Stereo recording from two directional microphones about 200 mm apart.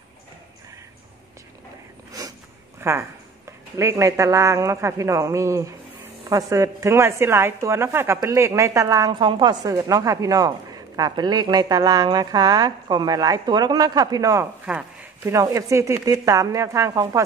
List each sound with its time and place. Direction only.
2.8 s a woman's voice: 10° right (ahead or behind)
14.7 s a sound: 5° right (ahead or behind)
15.3 s a woman's voice: 15° right (ahead or behind)